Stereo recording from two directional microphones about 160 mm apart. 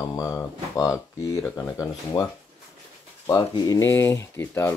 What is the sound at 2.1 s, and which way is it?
Speech, 30° left (ahead or behind).